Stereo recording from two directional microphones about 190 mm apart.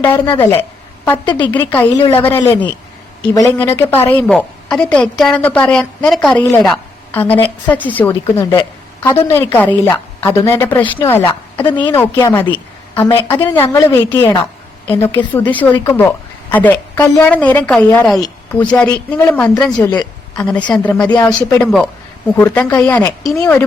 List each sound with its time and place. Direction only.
0.0 s a woman's voice: 15° left (ahead or behind)
1.2 s a woman's voice: 25° left (ahead or behind)
1.5 s a woman's voice: 10° left (ahead or behind)
18.2 s speech: 20° left (ahead or behind)
19.3 s a woman's voice: 5° left (ahead or behind)